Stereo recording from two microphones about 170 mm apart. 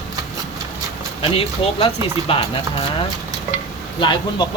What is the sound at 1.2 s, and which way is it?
Speech, 35° left (ahead or behind).